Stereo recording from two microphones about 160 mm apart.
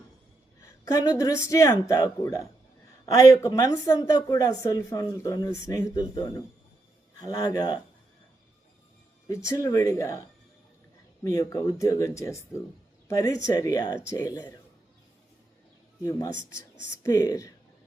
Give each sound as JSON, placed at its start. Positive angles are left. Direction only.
{"t": 0.6, "sound": "a sound", "side_deg": 25}
{"t": 1.2, "sound": "speech", "side_deg": 20}
{"t": 9.3, "sound": "speech", "side_deg": 20}
{"t": 11.2, "sound": "speech", "side_deg": 20}
{"t": 16.0, "sound": "speech", "side_deg": 20}